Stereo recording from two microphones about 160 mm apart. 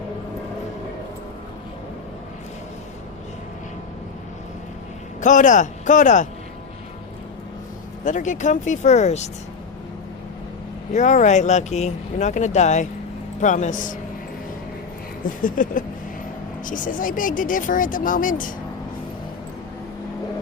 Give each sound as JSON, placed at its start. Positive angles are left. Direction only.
{"t": 5.2, "sound": "speech", "side_deg": 50}
{"t": 8.0, "sound": "speech", "side_deg": 50}
{"t": 10.9, "sound": "speech", "side_deg": 50}
{"t": 15.4, "sound": "speech", "side_deg": 55}